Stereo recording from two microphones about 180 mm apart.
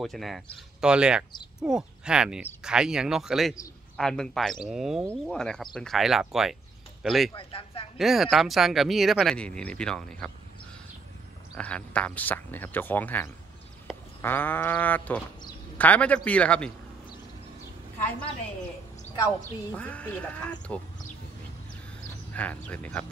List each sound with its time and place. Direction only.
0.0 s a man's voice: centre (ahead or behind)
7.3 s speech: 30° left (ahead or behind)
8.0 s speech: centre (ahead or behind)
11.5 s speech: 5° left (ahead or behind)
13.9 s a sound: centre (ahead or behind)
14.2 s speech: 10° left (ahead or behind)
17.9 s speech: 10° left (ahead or behind)
19.7 s speech: 5° left (ahead or behind)
22.3 s speech: 10° left (ahead or behind)